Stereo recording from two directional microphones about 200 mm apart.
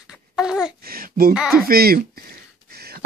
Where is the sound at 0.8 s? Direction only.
45° right (ahead or behind).